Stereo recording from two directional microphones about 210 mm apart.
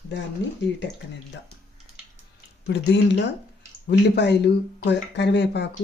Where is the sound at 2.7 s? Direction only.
55° left (ahead or behind).